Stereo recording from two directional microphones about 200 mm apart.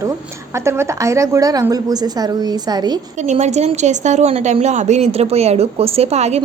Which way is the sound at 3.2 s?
35° right (ahead or behind).